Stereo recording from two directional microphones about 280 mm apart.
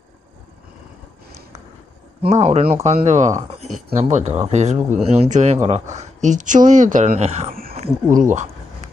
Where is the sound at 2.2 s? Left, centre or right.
Right.